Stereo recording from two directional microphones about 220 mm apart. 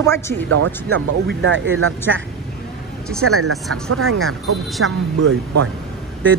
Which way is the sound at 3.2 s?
75° right (ahead or behind).